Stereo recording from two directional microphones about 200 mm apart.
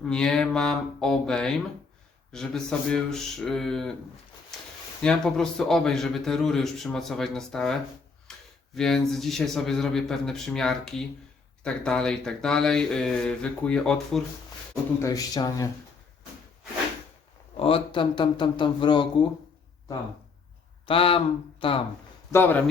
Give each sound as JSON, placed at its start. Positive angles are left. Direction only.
{"t": 0.0, "sound": "a man's voice", "side_deg": 5}
{"t": 5.0, "sound": "a man's voice", "side_deg": 5}
{"t": 8.3, "sound": "a sound", "side_deg": 0}
{"t": 8.7, "sound": "a man's voice", "side_deg": 0}
{"t": 14.9, "sound": "speech", "side_deg": 15}
{"t": 17.6, "sound": "speech", "side_deg": 25}
{"t": 20.8, "sound": "speech", "side_deg": 25}
{"t": 22.3, "sound": "speech", "side_deg": 10}